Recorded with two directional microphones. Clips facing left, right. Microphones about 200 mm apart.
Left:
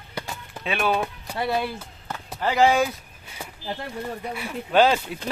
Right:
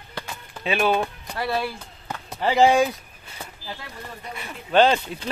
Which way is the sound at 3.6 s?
25° left (ahead or behind).